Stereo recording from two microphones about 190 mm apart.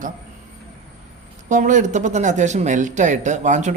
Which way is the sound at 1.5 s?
40° right (ahead or behind).